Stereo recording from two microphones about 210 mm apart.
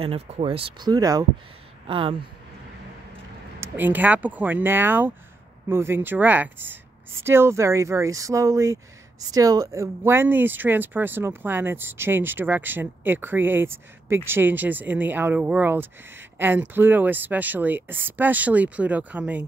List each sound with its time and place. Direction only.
0.0 s speech: 25° right (ahead or behind)
3.6 s speech: 10° right (ahead or behind)